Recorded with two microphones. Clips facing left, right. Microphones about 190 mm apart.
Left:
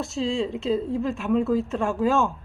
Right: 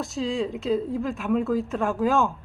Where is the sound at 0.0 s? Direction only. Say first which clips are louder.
Left 1 dB; centre (ahead or behind).